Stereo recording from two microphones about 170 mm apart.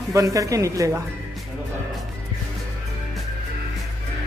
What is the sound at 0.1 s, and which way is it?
Speech, 20° right (ahead or behind).